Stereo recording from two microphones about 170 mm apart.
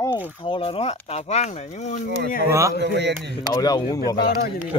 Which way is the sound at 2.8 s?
90° right.